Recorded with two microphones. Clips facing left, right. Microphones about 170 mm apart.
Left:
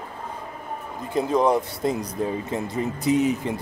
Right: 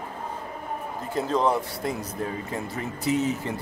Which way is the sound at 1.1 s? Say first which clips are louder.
Left 4 dB; 15° left (ahead or behind).